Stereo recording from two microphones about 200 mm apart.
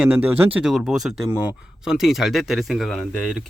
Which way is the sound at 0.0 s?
5° right (ahead or behind).